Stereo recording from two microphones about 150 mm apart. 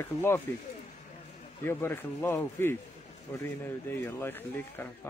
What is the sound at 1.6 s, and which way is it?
Speech, 15° left (ahead or behind).